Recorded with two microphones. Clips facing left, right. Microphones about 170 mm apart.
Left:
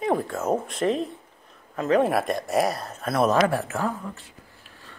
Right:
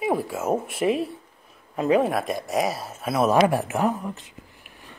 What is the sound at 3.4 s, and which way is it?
Speech, 15° right (ahead or behind).